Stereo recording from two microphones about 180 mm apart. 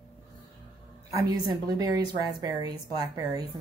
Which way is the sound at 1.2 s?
25° right (ahead or behind).